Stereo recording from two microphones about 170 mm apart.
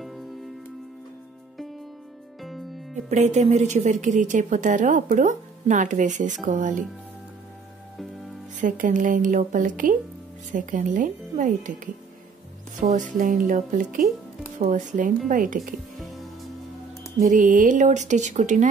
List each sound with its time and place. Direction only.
3.1 s a woman's voice: 45° right (ahead or behind)
8.5 s a woman's voice: 50° right (ahead or behind)
17.2 s a woman's voice: 50° right (ahead or behind)